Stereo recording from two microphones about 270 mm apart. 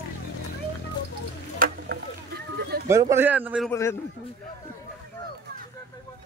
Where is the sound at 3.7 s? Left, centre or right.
Centre.